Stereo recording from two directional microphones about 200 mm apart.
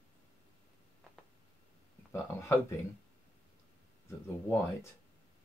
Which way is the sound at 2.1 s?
15° left (ahead or behind).